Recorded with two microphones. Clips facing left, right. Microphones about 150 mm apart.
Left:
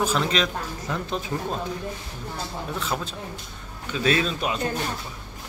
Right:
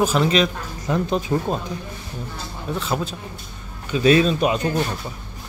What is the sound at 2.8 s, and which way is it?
Speech, centre (ahead or behind).